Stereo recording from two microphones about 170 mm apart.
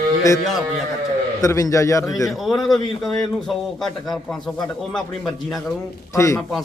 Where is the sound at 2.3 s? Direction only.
Centre (ahead or behind).